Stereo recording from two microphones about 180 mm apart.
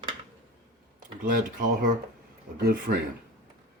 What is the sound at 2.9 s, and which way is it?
Speech, 50° right (ahead or behind).